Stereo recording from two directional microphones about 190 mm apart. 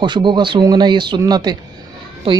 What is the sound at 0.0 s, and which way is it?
A woman's voice, 25° right (ahead or behind).